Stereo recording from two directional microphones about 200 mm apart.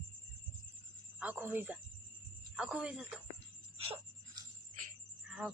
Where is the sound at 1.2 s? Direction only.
10° right (ahead or behind).